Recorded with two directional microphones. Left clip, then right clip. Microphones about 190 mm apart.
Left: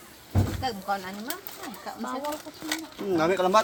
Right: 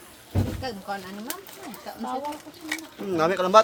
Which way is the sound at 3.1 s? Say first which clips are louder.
Right 2 dB; 15° right (ahead or behind).